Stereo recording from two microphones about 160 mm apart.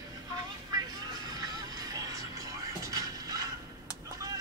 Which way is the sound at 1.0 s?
25° right (ahead or behind).